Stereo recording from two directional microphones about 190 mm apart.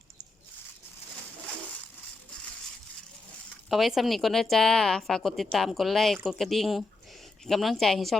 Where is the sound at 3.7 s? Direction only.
Centre (ahead or behind).